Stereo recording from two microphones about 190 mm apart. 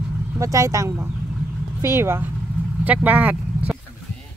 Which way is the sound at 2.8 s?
10° right (ahead or behind).